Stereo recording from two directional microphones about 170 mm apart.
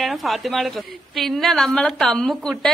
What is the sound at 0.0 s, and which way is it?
A woman's voice, centre (ahead or behind).